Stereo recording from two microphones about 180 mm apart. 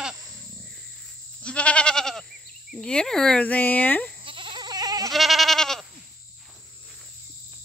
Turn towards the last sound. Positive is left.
turn(degrees=0)  # may be behind; listen again after turning